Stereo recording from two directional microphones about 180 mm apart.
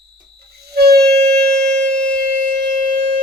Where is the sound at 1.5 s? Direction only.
60° right (ahead or behind).